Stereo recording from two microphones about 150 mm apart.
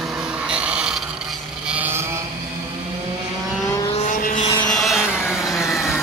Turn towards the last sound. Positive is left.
turn(degrees=0)  # may be behind; listen again after turning